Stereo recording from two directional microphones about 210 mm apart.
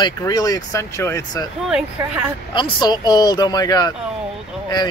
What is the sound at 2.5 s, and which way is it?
Speech, 20° left (ahead or behind).